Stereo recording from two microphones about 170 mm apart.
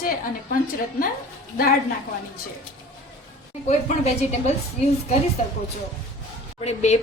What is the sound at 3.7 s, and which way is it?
Speech, 40° left (ahead or behind).